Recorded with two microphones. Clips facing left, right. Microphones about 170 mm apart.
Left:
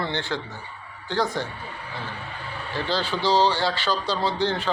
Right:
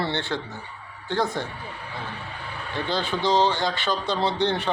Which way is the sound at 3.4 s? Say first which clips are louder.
Left 1 dB; 20° right (ahead or behind).